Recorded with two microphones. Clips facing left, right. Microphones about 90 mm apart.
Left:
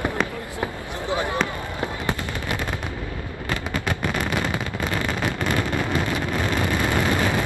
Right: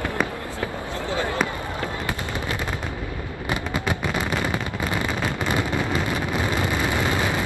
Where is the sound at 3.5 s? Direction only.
15° right (ahead or behind).